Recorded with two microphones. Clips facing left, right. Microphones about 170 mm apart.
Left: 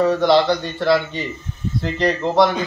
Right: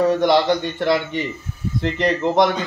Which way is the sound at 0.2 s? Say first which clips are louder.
Left 1 dB; 15° right (ahead or behind).